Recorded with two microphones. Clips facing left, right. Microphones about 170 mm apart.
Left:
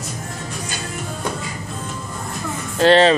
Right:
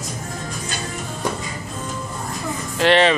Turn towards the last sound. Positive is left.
turn(degrees=35)  # may be behind; listen again after turning